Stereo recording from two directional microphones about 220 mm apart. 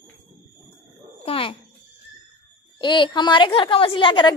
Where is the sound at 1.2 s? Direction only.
25° left (ahead or behind).